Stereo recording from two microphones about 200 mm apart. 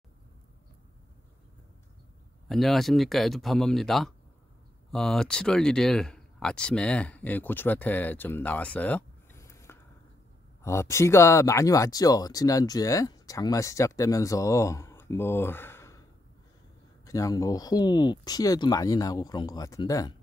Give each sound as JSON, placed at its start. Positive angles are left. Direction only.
{"t": 2.4, "sound": "speech", "side_deg": 0}
{"t": 17.0, "sound": "speech", "side_deg": 15}